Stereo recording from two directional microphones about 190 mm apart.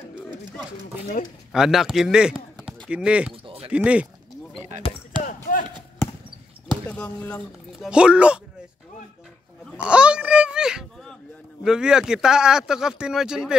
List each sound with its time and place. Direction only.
1.5 s speech: centre (ahead or behind)
3.4 s a sound: 30° right (ahead or behind)
3.7 s speech: 5° right (ahead or behind)
5.2 s chop: 50° left (ahead or behind)
6.9 s speech: 5° left (ahead or behind)
7.8 s speech: 5° right (ahead or behind)
9.8 s a sound: 5° right (ahead or behind)
11.6 s speech: 5° right (ahead or behind)